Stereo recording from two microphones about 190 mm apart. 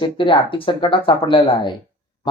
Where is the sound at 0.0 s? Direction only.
25° left (ahead or behind).